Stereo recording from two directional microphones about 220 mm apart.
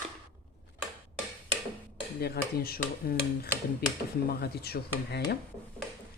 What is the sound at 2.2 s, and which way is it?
Speech, 45° left (ahead or behind).